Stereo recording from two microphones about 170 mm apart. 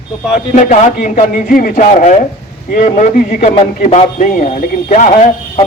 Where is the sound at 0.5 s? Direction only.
45° left (ahead or behind).